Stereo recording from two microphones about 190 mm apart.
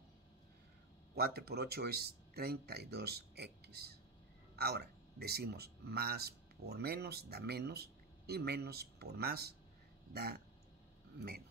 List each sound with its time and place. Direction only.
1.1 s speech: 55° right (ahead or behind)